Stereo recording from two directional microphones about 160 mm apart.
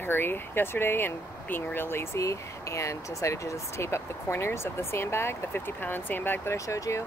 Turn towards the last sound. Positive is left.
turn(degrees=20)  # may be behind; listen again after turning